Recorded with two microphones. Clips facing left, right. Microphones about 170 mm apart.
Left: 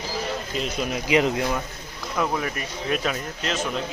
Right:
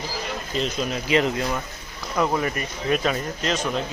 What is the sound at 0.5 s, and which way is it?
Speech, 10° left (ahead or behind).